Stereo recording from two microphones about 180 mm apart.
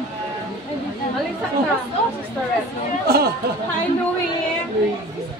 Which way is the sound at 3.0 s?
60° right (ahead or behind).